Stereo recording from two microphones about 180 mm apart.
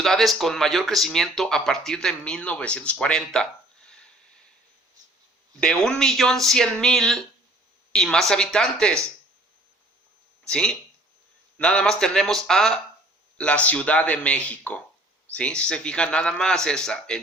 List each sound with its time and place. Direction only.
0.0 s speech: centre (ahead or behind)
3.8 s a sound: 5° left (ahead or behind)
5.5 s speech: 5° left (ahead or behind)
10.4 s a man's voice: 5° left (ahead or behind)